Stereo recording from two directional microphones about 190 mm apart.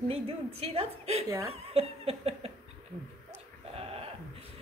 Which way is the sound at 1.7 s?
30° right (ahead or behind).